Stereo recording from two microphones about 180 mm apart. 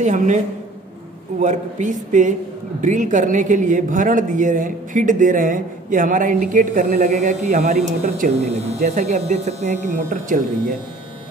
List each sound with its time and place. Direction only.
0.0 s a man's voice: 45° right (ahead or behind)
1.4 s a man's voice: 45° right (ahead or behind)